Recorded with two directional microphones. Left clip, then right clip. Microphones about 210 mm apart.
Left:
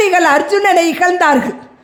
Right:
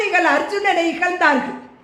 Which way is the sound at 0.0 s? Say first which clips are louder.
Left 6 dB; 50° left (ahead or behind).